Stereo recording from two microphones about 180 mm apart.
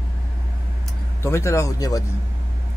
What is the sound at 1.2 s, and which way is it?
Speech, 15° left (ahead or behind).